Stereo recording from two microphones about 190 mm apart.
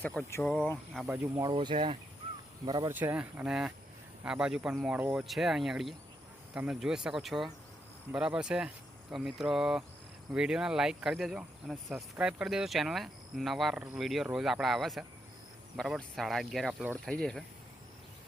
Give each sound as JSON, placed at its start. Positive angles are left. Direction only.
{"t": 0.0, "sound": "speech", "side_deg": 5}
{"t": 0.9, "sound": "speech", "side_deg": -10}
{"t": 1.5, "sound": "speech", "side_deg": -25}
{"t": 2.9, "sound": "speech", "side_deg": -10}